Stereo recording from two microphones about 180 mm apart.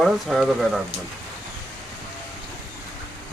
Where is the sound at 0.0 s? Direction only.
Centre (ahead or behind).